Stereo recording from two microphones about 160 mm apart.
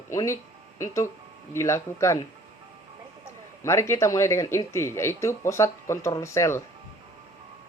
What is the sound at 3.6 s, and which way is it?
Speech, 15° left (ahead or behind).